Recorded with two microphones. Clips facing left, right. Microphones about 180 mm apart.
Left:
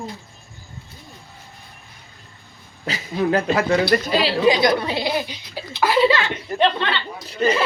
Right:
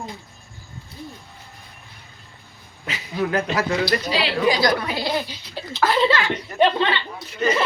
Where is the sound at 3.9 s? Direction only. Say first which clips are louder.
Left 4 dB; 50° left (ahead or behind).